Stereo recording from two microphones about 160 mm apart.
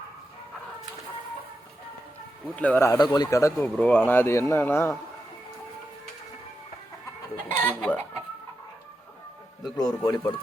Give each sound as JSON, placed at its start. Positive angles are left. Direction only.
{"t": 2.6, "sound": "a man's voice", "side_deg": 10}
{"t": 7.4, "sound": "chicken", "side_deg": 10}
{"t": 9.7, "sound": "a man's voice", "side_deg": 25}